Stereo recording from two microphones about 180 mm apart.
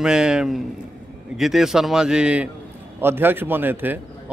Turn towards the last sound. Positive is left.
turn(degrees=-10)  # may be behind; listen again after turning